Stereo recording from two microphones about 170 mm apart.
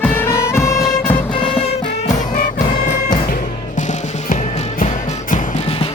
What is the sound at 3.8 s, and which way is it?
Music, 45° left (ahead or behind).